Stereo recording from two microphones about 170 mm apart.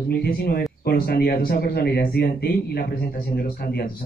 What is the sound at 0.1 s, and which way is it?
A woman's voice, 65° left (ahead or behind).